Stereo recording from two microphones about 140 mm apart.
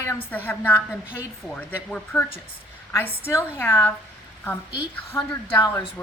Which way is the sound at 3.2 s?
20° left (ahead or behind).